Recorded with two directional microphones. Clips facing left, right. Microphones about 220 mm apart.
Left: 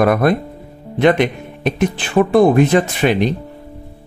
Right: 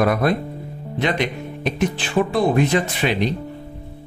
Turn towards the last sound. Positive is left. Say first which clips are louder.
# left 5 dB
turn(degrees=55)  # may be behind; listen again after turning